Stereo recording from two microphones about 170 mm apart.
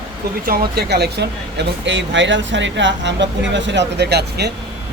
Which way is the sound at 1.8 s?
90° right.